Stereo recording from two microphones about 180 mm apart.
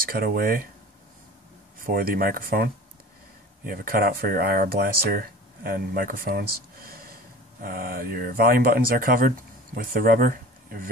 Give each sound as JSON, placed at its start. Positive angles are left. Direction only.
{"t": 0.1, "sound": "speech", "side_deg": -55}
{"t": 1.8, "sound": "speech", "side_deg": -55}